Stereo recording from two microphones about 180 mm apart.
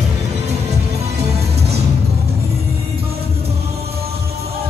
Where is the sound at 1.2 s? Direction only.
35° right (ahead or behind).